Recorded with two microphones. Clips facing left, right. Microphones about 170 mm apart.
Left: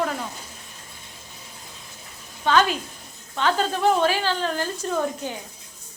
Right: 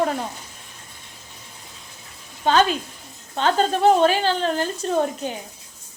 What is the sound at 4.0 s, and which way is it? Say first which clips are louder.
Speech: right 4 dB; 45° right (ahead or behind).